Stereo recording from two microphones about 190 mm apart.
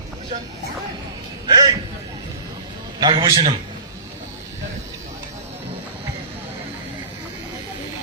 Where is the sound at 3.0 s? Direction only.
20° right (ahead or behind).